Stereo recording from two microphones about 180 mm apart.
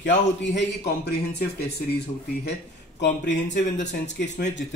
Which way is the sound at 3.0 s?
80° left.